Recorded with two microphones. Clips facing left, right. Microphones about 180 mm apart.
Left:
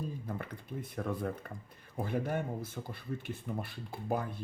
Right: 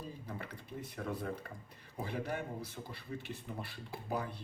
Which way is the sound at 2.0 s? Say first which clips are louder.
Left 5 dB; 50° left (ahead or behind).